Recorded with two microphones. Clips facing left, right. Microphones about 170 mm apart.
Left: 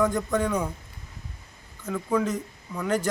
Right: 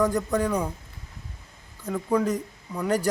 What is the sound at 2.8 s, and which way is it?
Speech, 35° right (ahead or behind).